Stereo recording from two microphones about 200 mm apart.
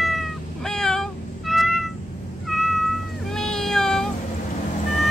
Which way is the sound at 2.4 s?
Centre (ahead or behind).